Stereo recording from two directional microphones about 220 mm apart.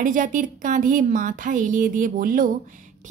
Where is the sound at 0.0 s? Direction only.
35° right (ahead or behind).